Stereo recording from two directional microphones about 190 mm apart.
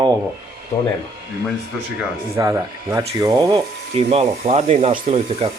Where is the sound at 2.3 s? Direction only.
15° right (ahead or behind).